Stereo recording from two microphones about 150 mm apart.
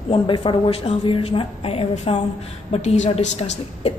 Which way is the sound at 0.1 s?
35° left (ahead or behind).